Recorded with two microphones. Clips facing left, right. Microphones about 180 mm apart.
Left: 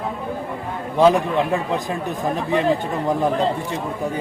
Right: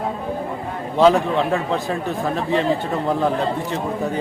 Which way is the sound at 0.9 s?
15° left (ahead or behind).